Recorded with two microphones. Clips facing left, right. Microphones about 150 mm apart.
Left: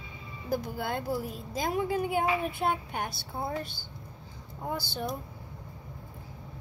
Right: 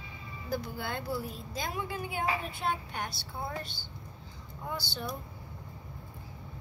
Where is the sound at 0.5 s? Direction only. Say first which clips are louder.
Left 4 dB; 45° left (ahead or behind).